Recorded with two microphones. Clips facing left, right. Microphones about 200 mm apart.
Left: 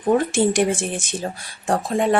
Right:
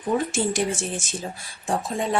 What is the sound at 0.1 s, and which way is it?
Speech, 55° left (ahead or behind).